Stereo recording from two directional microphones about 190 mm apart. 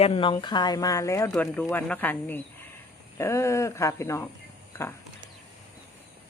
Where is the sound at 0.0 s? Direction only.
30° left (ahead or behind); by 4.3 s 15° left (ahead or behind).